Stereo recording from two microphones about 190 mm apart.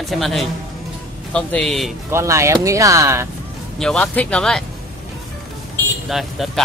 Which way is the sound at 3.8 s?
5° left (ahead or behind).